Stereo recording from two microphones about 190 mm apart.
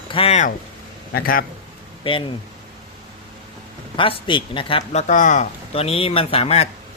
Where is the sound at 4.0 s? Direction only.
25° left (ahead or behind).